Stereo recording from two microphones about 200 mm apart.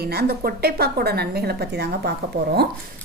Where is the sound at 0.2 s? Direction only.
50° right (ahead or behind).